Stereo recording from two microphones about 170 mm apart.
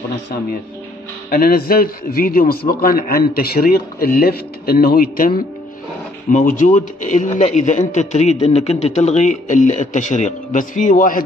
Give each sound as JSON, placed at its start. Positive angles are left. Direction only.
{"t": 1.3, "sound": "a man's voice", "side_deg": 60}